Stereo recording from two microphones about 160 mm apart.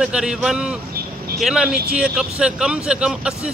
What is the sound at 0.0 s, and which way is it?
A man's voice, 5° right (ahead or behind).